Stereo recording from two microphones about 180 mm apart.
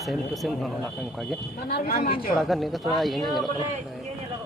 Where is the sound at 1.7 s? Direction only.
55° left (ahead or behind).